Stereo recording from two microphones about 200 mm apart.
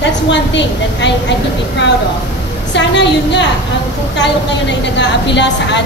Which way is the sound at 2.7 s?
60° left (ahead or behind).